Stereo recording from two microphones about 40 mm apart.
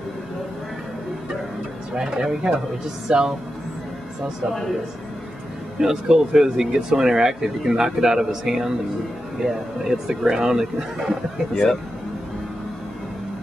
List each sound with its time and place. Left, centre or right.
2.0 s speech: centre
5.8 s speech: centre
11.5 s speech: centre